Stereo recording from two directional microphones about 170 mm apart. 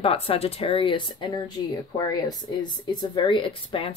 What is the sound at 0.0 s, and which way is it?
Speech, 35° left (ahead or behind).